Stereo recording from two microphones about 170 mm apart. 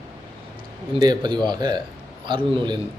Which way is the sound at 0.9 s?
25° right (ahead or behind).